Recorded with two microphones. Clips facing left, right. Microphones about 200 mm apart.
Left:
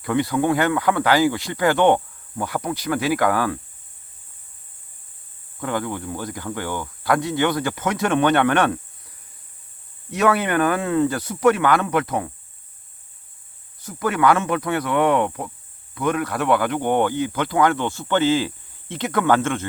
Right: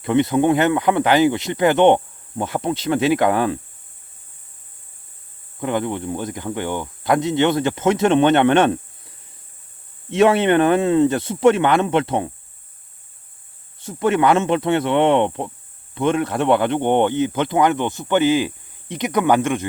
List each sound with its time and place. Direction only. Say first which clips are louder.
0.0 s speech: right 4 dB; 20° right (ahead or behind)
5.5 s speech: right 3 dB; 20° right (ahead or behind)
13.7 s speech: right 5 dB; 25° right (ahead or behind)